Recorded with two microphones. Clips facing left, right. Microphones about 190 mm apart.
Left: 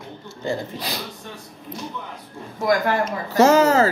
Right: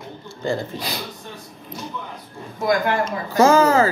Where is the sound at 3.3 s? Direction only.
40° left (ahead or behind).